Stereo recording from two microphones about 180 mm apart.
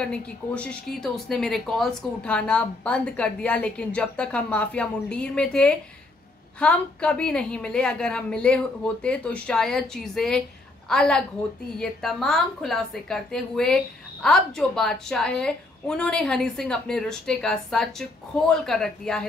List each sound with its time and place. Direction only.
0.0 s speech: 5° left (ahead or behind)